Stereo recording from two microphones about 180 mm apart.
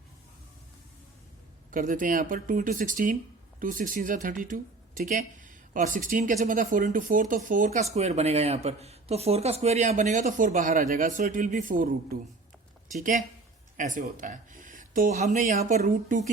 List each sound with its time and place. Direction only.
1.7 s speech: 45° right (ahead or behind)